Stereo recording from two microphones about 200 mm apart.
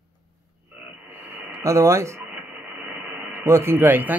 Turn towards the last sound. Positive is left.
turn(degrees=-10)  # may be behind; listen again after turning